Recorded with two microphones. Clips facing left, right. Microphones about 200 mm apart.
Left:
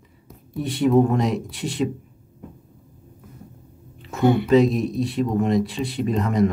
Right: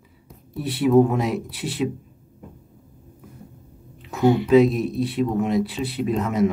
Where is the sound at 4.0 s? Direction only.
Centre (ahead or behind).